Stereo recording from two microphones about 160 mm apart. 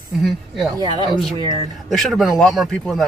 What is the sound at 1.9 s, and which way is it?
Speech, centre (ahead or behind).